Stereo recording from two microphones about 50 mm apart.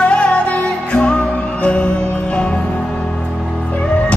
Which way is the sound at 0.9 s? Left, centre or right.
Centre.